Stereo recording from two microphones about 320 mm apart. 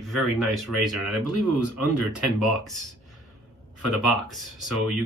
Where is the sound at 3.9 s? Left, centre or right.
Centre.